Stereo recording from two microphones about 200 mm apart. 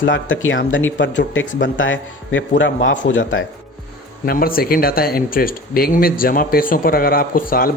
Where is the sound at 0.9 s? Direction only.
65° left (ahead or behind).